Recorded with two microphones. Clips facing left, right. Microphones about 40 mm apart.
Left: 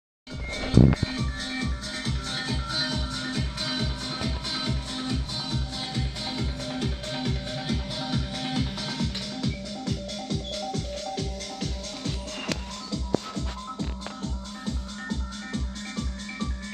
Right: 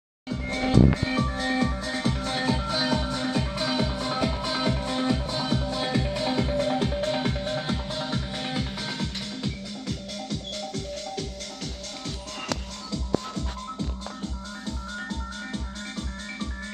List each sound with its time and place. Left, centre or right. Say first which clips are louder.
1.1 s music: right 6 dB; right
5.5 s music: right 8 dB; right; by 9.5 s centre
10.7 s music: left 1 dB; centre
15.0 s music: even; centre